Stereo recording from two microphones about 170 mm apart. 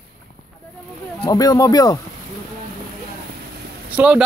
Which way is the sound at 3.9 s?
10° right (ahead or behind).